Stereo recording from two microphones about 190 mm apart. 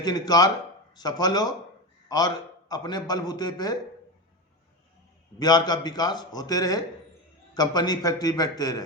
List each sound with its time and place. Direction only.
0.0 s a man's voice: 20° left (ahead or behind)
5.4 s a man's voice: 20° left (ahead or behind)